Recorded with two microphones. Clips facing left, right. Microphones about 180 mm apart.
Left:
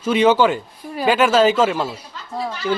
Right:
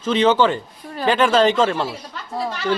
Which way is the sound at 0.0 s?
10° left (ahead or behind).